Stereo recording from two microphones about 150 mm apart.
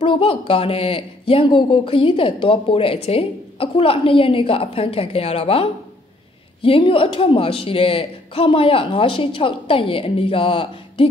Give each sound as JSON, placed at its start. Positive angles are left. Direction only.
{"t": 0.0, "sound": "speech", "side_deg": 35}